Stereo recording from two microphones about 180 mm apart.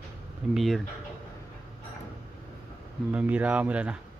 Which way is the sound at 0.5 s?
Centre (ahead or behind).